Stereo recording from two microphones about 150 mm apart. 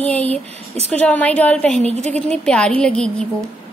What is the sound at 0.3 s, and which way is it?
Speech, 45° right (ahead or behind).